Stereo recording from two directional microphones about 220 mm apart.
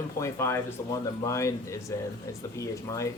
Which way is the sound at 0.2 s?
10° left (ahead or behind).